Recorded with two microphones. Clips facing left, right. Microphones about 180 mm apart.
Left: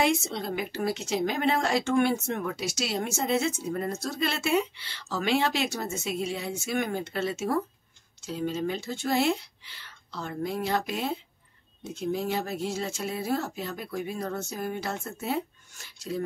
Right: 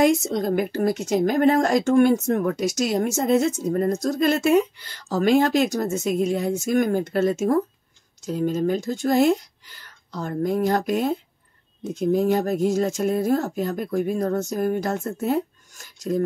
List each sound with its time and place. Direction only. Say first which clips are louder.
0.0 s a woman's voice: right 7 dB; 45° right (ahead or behind)